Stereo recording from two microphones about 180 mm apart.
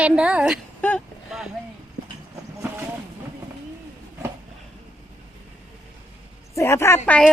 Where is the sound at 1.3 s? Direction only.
Centre (ahead or behind).